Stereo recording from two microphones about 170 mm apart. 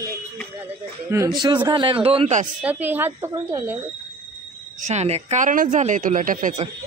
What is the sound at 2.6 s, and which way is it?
Speech, 10° right (ahead or behind).